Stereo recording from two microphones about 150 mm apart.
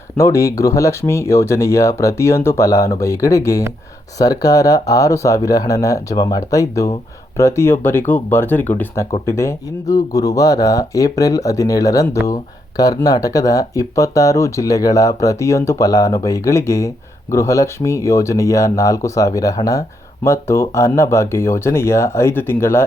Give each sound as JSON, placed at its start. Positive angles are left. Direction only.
{"t": 0.2, "sound": "speech", "side_deg": 20}